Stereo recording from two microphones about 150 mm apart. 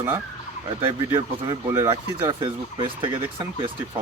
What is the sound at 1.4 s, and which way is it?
Speech, 25° right (ahead or behind).